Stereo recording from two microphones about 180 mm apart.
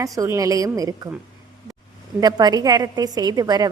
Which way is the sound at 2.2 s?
20° right (ahead or behind).